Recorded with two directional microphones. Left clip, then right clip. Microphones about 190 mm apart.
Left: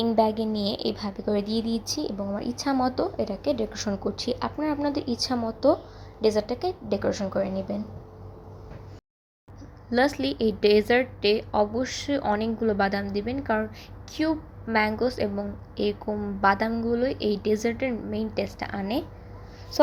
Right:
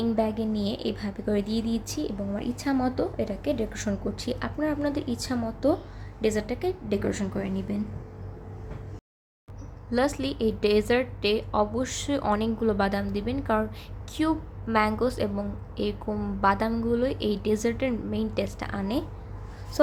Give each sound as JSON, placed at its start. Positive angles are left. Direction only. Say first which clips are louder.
{"t": 0.0, "sound": "a woman's voice", "louder": "left 4 dB", "side_deg": 20}
{"t": 9.9, "sound": "a woman's voice", "louder": "left 3 dB", "side_deg": 10}